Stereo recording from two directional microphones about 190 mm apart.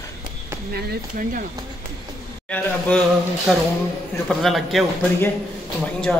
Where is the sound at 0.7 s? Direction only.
50° right (ahead or behind).